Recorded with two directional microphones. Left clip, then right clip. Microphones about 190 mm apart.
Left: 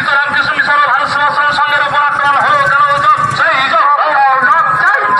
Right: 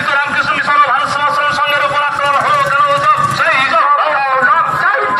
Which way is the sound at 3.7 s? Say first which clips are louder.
Left 1 dB; 25° right (ahead or behind).